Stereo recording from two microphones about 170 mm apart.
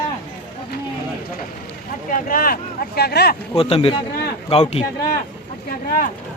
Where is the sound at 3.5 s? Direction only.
35° left (ahead or behind).